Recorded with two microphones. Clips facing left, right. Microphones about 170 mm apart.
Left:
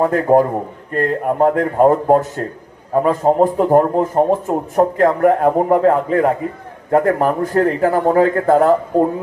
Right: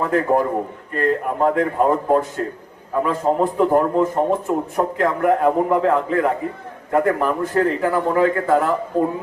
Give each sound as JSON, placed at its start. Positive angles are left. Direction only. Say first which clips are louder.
{"t": 0.0, "sound": "a man's voice", "louder": "left 5 dB", "side_deg": 45}